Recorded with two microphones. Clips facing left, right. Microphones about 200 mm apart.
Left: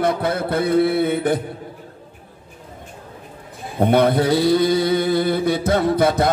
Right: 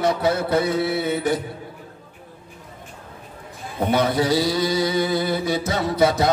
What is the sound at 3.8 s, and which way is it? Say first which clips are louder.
Mantra: left 4 dB; 55° left (ahead or behind).